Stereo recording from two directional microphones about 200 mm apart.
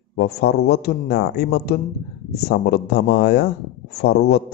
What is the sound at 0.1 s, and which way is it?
A man's voice, 55° left (ahead or behind).